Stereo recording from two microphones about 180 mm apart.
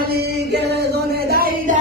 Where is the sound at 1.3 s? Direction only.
55° right (ahead or behind).